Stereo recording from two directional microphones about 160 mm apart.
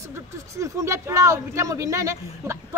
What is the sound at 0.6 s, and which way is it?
Speech, 20° right (ahead or behind).